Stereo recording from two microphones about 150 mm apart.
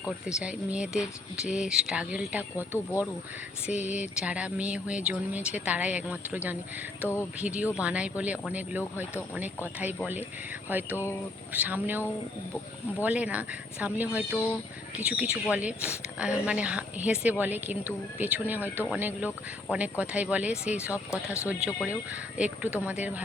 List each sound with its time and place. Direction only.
0.1 s speech: 5° right (ahead or behind)
2.7 s speech: 20° left (ahead or behind)
3.7 s speech: 10° right (ahead or behind)
10.7 s speech: 15° right (ahead or behind)